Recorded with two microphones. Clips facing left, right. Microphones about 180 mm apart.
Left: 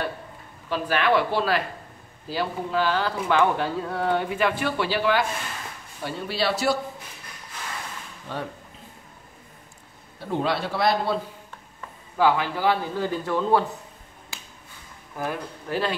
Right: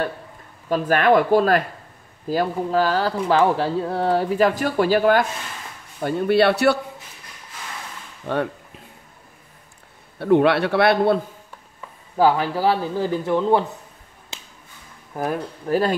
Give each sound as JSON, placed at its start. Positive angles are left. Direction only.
{"t": 0.7, "sound": "a man's voice", "side_deg": -45}
{"t": 8.3, "sound": "a man's voice", "side_deg": -60}
{"t": 10.1, "sound": "a man's voice", "side_deg": -65}
{"t": 12.2, "sound": "speech", "side_deg": -40}
{"t": 13.2, "sound": "speech", "side_deg": -20}
{"t": 14.3, "sound": "finger snapping", "side_deg": -20}
{"t": 15.1, "sound": "speech", "side_deg": -45}